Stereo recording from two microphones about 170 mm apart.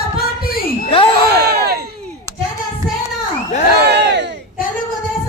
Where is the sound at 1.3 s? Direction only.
70° right (ahead or behind).